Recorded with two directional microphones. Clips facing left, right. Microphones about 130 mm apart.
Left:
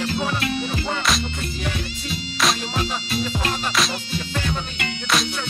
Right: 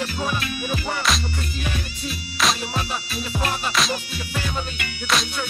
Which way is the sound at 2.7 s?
20° left (ahead or behind).